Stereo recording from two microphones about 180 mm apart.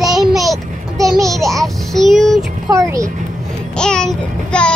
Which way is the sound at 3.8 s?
5° left (ahead or behind).